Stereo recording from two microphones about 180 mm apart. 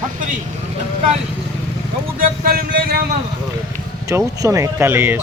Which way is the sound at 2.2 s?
55° right (ahead or behind).